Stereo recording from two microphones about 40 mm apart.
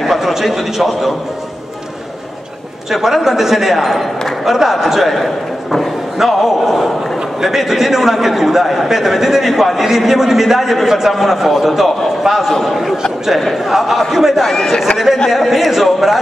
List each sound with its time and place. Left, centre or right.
0.0 s a man's voice: centre
2.9 s a man's voice: centre